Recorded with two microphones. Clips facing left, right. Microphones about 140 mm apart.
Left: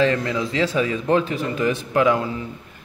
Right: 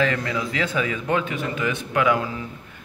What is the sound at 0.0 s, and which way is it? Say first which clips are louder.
A man's voice: left 3 dB; 30° left (ahead or behind).